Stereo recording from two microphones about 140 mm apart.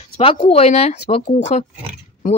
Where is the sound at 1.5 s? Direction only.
70° left (ahead or behind).